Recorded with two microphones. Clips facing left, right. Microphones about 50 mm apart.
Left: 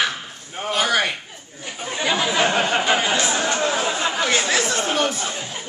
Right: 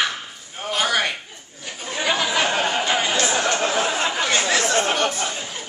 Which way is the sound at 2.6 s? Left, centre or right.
Left.